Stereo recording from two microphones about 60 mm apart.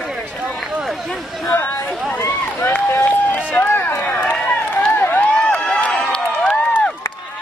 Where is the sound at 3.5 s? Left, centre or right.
Left.